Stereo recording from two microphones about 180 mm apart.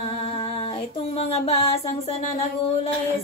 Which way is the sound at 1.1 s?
30° left (ahead or behind).